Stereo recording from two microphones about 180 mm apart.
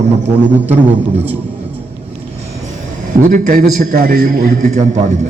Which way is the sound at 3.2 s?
45° right (ahead or behind).